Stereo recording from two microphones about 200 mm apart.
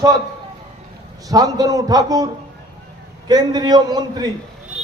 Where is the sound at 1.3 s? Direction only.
20° right (ahead or behind).